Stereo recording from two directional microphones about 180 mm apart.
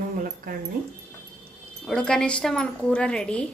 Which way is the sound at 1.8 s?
5° left (ahead or behind).